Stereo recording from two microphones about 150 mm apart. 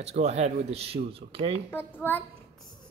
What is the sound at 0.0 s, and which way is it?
Speech, 45° right (ahead or behind).